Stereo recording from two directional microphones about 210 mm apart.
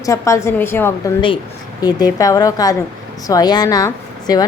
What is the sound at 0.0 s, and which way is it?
Speech, 15° left (ahead or behind).